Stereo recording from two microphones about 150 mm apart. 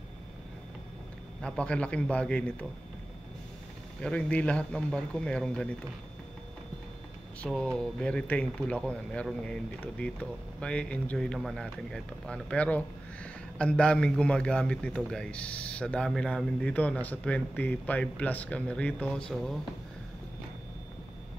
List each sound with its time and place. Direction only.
1.4 s speech: 10° left (ahead or behind)
4.0 s speech: 10° left (ahead or behind)
7.4 s speech: 5° left (ahead or behind)